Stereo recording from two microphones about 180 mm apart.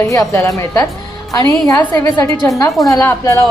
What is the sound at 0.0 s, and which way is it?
A woman's voice, 15° left (ahead or behind).